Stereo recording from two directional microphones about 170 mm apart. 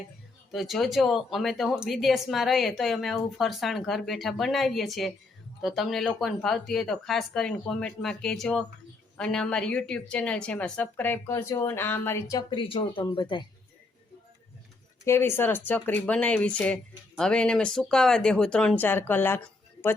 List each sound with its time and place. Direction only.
0.5 s speech: centre (ahead or behind)
12.5 s speech: 30° left (ahead or behind)
15.0 s speech: 15° left (ahead or behind)